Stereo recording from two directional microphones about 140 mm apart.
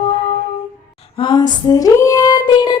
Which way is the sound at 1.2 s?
35° left (ahead or behind).